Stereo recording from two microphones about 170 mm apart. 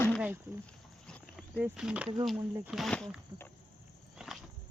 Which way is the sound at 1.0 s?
5° left (ahead or behind).